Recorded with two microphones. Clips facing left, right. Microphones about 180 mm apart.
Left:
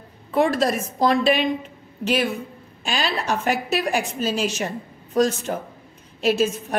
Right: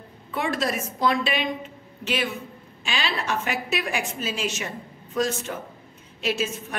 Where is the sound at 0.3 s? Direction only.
35° left (ahead or behind).